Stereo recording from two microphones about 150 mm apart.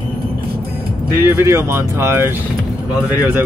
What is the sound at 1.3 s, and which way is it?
Speech, 20° right (ahead or behind).